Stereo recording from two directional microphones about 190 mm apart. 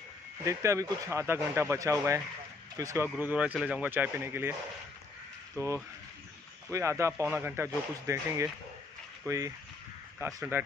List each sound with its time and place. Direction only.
0.5 s speech: 15° right (ahead or behind)
5.6 s speech: 15° right (ahead or behind)
10.1 s speech: 10° right (ahead or behind)